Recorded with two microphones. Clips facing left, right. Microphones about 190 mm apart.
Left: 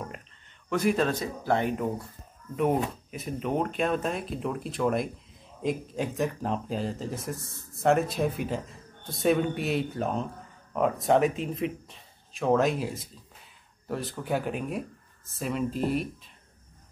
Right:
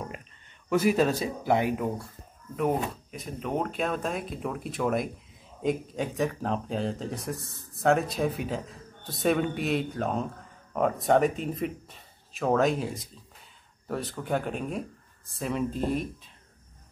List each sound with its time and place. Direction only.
0.7 s speech: 5° right (ahead or behind)